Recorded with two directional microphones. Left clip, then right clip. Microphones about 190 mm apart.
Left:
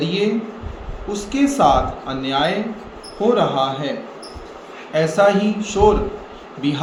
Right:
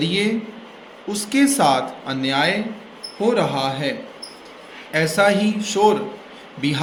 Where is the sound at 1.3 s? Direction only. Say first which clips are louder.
Left 2 dB; 40° right (ahead or behind).